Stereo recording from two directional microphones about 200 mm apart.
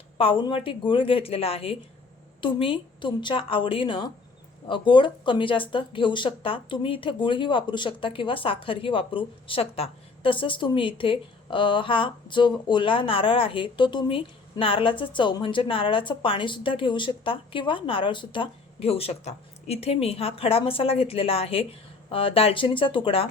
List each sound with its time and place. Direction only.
0.2 s speech: 25° left (ahead or behind)